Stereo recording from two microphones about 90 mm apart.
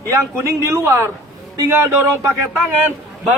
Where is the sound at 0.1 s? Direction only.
35° right (ahead or behind).